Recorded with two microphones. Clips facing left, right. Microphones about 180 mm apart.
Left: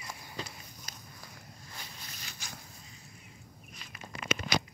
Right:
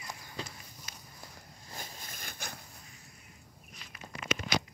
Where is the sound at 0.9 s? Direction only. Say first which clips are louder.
Left 1 dB; 35° left (ahead or behind).